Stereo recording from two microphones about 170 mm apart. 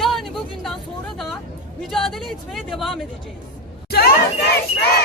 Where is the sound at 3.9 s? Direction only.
70° left (ahead or behind).